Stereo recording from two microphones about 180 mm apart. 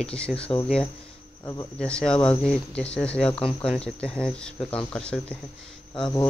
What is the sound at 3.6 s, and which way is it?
Speech, 5° left (ahead or behind).